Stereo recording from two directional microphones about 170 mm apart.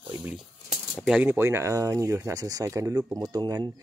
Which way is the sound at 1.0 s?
10° right (ahead or behind).